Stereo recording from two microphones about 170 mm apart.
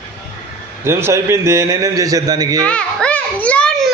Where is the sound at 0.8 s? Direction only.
15° right (ahead or behind).